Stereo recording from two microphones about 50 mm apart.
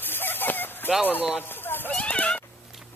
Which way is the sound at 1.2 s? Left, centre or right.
Right.